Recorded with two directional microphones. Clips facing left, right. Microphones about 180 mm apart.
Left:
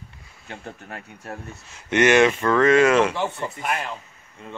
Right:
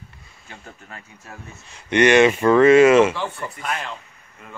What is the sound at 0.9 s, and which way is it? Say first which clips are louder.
Speech: left 6 dB; 60° left (ahead or behind).